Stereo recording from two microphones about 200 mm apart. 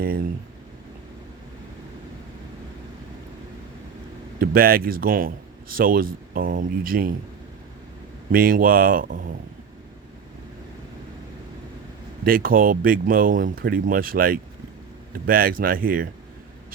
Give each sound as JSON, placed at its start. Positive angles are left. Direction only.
{"t": 0.0, "sound": "speech", "side_deg": -45}
{"t": 4.4, "sound": "speech", "side_deg": -45}
{"t": 8.3, "sound": "speech", "side_deg": -45}
{"t": 12.2, "sound": "speech", "side_deg": -45}